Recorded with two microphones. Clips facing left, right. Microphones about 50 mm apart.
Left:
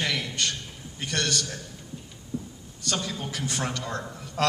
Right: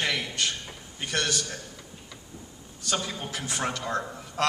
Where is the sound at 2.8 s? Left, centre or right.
Centre.